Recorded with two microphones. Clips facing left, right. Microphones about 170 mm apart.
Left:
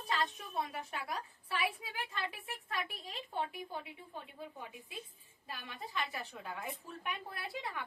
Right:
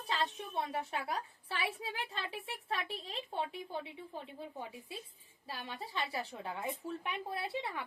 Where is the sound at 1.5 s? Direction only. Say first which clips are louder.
Left 1 dB; 30° right (ahead or behind).